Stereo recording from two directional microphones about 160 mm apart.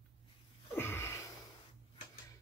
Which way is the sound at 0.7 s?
15° left (ahead or behind).